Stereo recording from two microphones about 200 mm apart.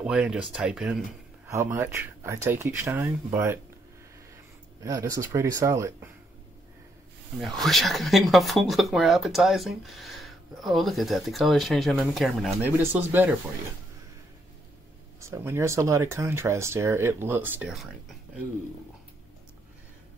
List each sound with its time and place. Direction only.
0.0 s speech: 5° right (ahead or behind)
4.8 s speech: 15° right (ahead or behind)
7.3 s speech: centre (ahead or behind)
15.1 s speech: 15° right (ahead or behind)